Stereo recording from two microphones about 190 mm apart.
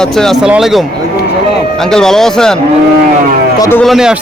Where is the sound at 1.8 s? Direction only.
5° left (ahead or behind).